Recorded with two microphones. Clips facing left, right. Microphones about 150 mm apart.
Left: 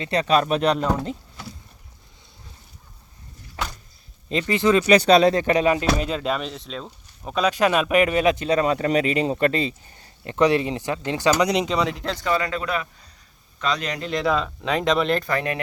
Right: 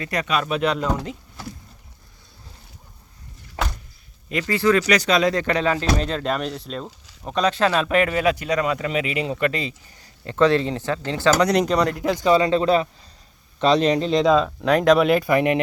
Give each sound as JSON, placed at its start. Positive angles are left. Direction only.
{"t": 0.0, "sound": "speech", "side_deg": 30}
{"t": 4.3, "sound": "speech", "side_deg": 25}
{"t": 4.9, "sound": "speech", "side_deg": 30}
{"t": 5.4, "sound": "speech", "side_deg": 20}
{"t": 6.0, "sound": "a man's voice", "side_deg": 5}
{"t": 12.0, "sound": "speech", "side_deg": -15}
{"t": 14.6, "sound": "speech", "side_deg": 0}